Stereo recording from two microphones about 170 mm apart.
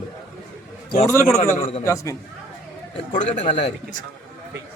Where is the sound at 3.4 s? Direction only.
35° left (ahead or behind).